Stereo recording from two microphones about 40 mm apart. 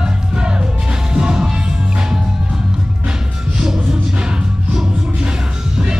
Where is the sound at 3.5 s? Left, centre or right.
Centre.